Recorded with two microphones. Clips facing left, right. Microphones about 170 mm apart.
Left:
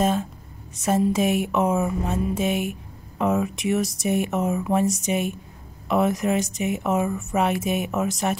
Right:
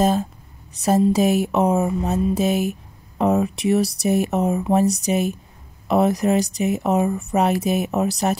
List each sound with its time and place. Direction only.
0.0 s speech: 35° right (ahead or behind)
0.8 s music: 35° right (ahead or behind)